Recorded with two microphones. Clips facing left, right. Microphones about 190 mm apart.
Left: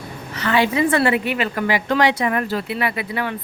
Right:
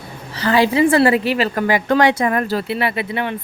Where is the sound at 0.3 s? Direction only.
35° right (ahead or behind).